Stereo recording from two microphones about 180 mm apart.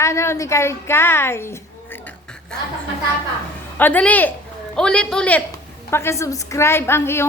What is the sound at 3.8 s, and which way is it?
A woman's voice, 10° left (ahead or behind).